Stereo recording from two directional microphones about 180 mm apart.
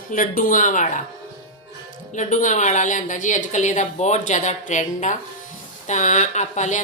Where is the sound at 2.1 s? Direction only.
45° left (ahead or behind).